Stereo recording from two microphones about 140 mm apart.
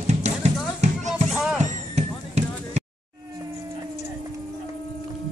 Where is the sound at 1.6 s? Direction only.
55° right (ahead or behind).